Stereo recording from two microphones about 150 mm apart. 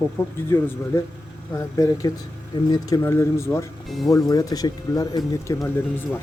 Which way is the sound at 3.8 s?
Centre (ahead or behind).